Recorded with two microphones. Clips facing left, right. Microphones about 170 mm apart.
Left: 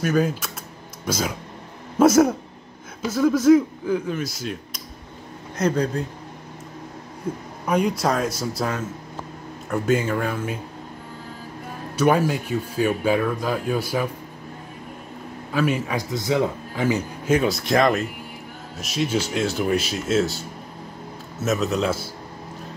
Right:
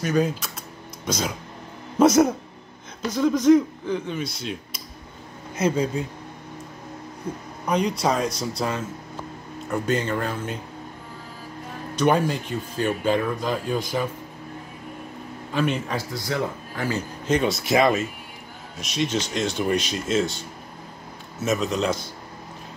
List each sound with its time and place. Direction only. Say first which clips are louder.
0.0 s speech: left 1 dB; 5° left (ahead or behind)
7.6 s speech: left 1 dB; 5° left (ahead or behind)
11.9 s speech: left 2 dB; 5° left (ahead or behind)
15.5 s speech: left 2 dB; 10° left (ahead or behind)
16.1 s speech: left 8 dB; 20° left (ahead or behind)
17.3 s speech: left 1 dB; centre (ahead or behind)